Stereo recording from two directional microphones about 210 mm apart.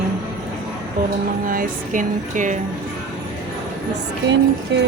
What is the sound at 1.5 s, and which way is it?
Speech, 40° right (ahead or behind).